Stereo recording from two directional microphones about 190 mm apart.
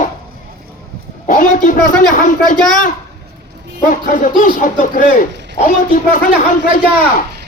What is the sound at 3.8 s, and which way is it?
Speech, 45° left (ahead or behind).